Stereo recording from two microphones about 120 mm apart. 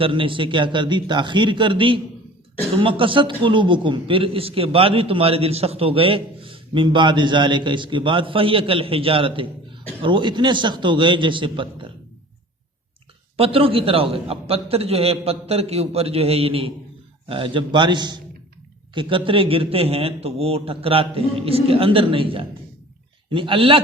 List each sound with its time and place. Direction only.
0.0 s a man's voice: 45° right (ahead or behind)
13.3 s a man's voice: 50° right (ahead or behind)